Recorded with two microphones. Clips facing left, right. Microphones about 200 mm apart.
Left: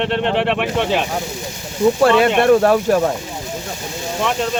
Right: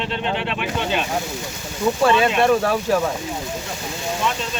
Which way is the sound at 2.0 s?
65° left (ahead or behind).